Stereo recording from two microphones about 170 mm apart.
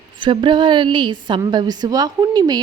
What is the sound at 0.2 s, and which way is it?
A woman's voice, 30° right (ahead or behind).